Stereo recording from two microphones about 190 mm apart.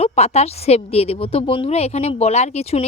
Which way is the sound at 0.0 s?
35° left (ahead or behind).